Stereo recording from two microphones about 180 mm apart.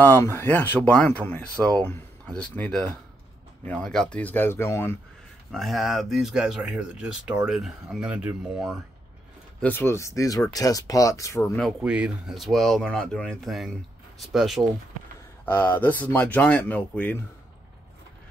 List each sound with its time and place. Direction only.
0.0 s speech: 10° left (ahead or behind)
5.5 s speech: centre (ahead or behind)
9.6 s speech: 10° left (ahead or behind)
11.8 s speech: 5° right (ahead or behind)
15.4 s speech: 10° left (ahead or behind)